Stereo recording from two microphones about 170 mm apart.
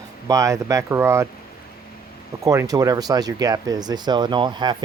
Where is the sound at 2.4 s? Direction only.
15° right (ahead or behind).